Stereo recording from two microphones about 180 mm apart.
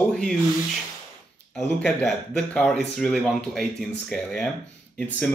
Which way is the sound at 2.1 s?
5° left (ahead or behind).